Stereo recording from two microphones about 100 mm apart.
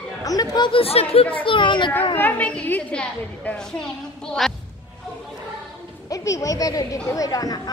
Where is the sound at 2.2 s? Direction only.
15° left (ahead or behind).